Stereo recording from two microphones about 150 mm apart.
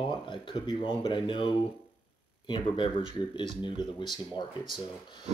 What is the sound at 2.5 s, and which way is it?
Speech, 35° left (ahead or behind).